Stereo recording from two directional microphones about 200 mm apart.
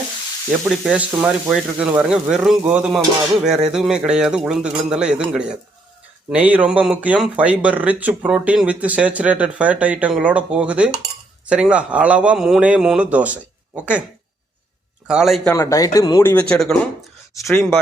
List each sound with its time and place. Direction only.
0.7 s speech: 5° right (ahead or behind)
15.0 s speech: 5° right (ahead or behind)
15.5 s speech: 15° left (ahead or behind); by 17.7 s centre (ahead or behind)